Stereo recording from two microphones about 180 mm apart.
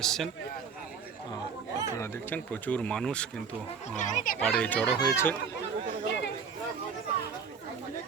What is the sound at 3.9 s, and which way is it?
Speech, 45° left (ahead or behind).